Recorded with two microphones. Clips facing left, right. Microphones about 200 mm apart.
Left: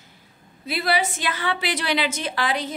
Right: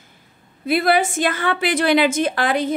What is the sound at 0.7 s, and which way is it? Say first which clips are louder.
A woman's voice: right 7 dB; 50° right (ahead or behind).